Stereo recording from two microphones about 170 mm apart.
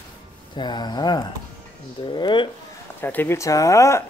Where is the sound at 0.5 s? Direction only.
25° left (ahead or behind).